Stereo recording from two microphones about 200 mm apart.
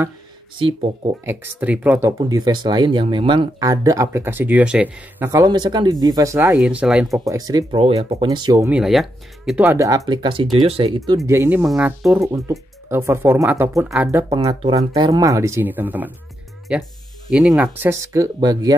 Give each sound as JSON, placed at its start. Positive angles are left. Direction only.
{"t": 0.6, "sound": "speech", "side_deg": -25}
{"t": 1.2, "sound": "speech", "side_deg": -10}
{"t": 7.1, "sound": "speech", "side_deg": -15}
{"t": 8.6, "sound": "speech", "side_deg": -5}
{"t": 11.2, "sound": "speech", "side_deg": -10}
{"t": 14.3, "sound": "speech", "side_deg": -20}